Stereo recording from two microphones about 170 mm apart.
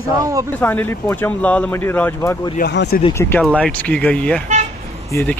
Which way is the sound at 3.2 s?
15° left (ahead or behind).